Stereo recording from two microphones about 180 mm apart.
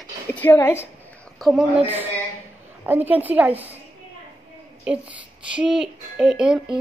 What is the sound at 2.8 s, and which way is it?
Speech, 10° right (ahead or behind).